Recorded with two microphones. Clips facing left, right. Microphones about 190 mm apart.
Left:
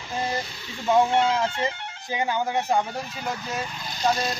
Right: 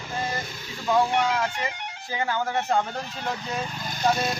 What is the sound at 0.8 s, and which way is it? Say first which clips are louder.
Speech: left 2 dB; 20° left (ahead or behind).